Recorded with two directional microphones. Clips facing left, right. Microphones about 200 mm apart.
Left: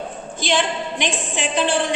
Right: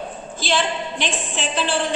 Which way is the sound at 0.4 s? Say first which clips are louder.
Left 1 dB; 15° left (ahead or behind).